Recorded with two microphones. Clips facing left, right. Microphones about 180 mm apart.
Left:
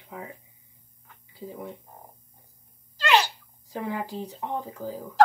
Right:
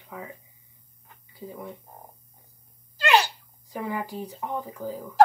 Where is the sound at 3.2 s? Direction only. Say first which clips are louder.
Even; 15° right (ahead or behind).